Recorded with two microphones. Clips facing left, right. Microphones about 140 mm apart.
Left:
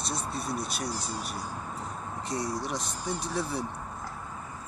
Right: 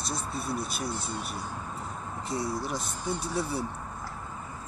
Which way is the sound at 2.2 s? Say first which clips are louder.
Right 1 dB; 5° right (ahead or behind).